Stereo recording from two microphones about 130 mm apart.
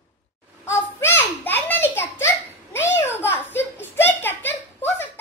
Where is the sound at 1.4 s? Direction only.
15° left (ahead or behind).